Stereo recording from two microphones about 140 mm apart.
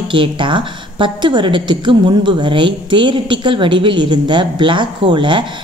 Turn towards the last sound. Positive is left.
turn(degrees=-35)  # may be behind; listen again after turning